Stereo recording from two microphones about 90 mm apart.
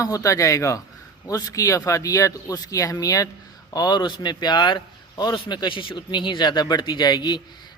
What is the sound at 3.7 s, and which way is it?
Speech, 50° left (ahead or behind).